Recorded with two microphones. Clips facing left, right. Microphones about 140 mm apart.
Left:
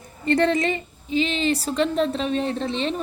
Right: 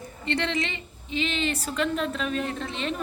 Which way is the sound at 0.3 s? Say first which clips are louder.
Left 8 dB; 45° left (ahead or behind).